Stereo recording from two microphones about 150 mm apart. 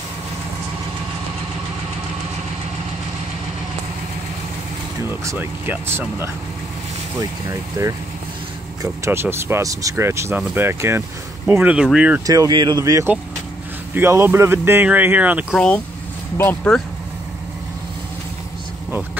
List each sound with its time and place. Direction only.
5.0 s speech: 20° right (ahead or behind)
7.8 s speech: 20° right (ahead or behind)
12.3 s speech: 25° right (ahead or behind)
15.5 s speech: 5° left (ahead or behind)